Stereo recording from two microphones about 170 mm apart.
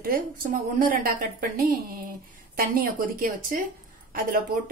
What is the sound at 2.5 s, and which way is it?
A woman's voice, 55° right (ahead or behind).